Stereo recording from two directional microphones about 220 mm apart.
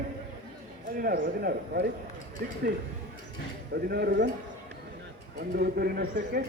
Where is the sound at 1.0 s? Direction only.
45° right (ahead or behind).